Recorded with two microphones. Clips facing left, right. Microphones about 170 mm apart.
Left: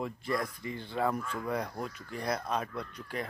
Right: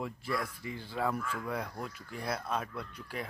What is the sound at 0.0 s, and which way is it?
Speech, 5° right (ahead or behind).